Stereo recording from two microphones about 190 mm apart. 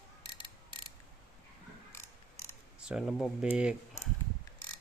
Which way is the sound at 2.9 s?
Centre (ahead or behind).